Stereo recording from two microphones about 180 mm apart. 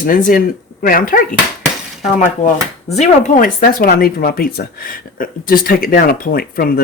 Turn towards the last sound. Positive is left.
turn(degrees=55)  # may be behind; listen again after turning